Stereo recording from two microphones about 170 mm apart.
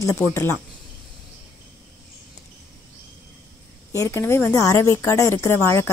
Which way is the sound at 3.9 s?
15° left (ahead or behind).